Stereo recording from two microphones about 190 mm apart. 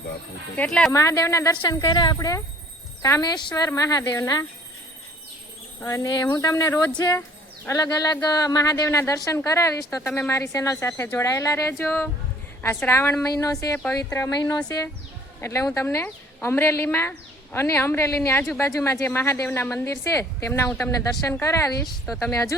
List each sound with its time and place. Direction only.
0.5 s speech: 5° left (ahead or behind)
0.9 s speech: 15° left (ahead or behind)
5.8 s speech: 15° left (ahead or behind)